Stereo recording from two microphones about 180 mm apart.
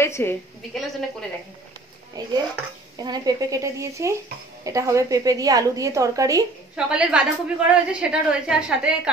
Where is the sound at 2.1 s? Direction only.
20° right (ahead or behind).